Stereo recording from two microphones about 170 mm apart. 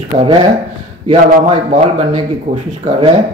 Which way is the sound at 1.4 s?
35° right (ahead or behind).